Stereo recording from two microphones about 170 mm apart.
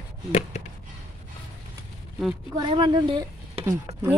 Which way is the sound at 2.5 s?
30° right (ahead or behind).